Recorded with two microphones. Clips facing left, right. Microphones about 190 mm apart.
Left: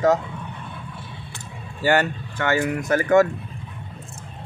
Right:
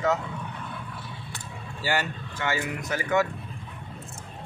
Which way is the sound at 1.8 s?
55° left (ahead or behind).